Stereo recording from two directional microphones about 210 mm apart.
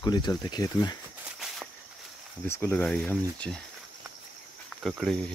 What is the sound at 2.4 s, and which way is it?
Cricket, 10° left (ahead or behind).